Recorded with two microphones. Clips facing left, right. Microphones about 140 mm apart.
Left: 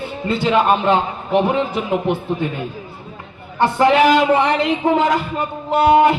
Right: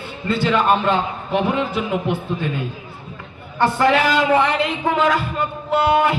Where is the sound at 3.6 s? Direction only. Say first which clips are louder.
Left 3 dB; 20° left (ahead or behind).